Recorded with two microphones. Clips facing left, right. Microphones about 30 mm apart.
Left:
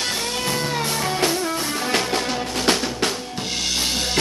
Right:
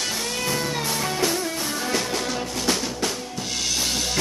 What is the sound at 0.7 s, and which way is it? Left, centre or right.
Music, left.